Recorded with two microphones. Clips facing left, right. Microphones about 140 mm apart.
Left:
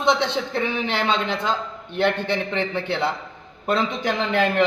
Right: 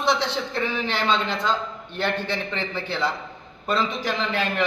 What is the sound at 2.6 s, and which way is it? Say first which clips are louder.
Speech: left 4 dB; 60° left (ahead or behind).